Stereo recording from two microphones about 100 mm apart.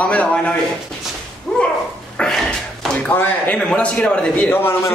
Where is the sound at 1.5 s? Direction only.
10° left (ahead or behind).